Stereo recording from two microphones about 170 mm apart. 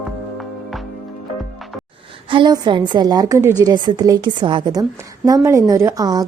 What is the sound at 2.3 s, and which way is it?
A woman's voice, 30° right (ahead or behind).